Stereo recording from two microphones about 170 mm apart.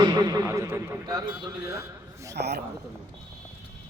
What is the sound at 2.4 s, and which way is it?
Speech, 75° right (ahead or behind).